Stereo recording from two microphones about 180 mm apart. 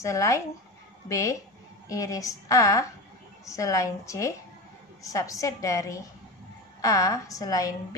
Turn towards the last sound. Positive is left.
turn(degrees=20)  # may be behind; listen again after turning